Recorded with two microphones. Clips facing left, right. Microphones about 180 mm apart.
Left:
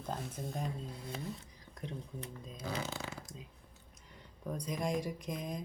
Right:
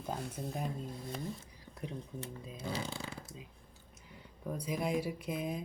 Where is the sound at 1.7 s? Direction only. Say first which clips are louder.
Right 1 dB; 5° right (ahead or behind).